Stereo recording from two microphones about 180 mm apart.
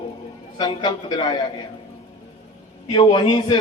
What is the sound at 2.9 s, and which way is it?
Speech, 25° left (ahead or behind).